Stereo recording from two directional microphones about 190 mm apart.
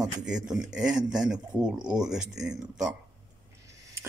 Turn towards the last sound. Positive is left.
turn(degrees=-15)  # may be behind; listen again after turning